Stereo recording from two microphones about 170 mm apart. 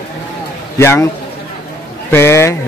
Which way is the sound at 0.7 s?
15° left (ahead or behind).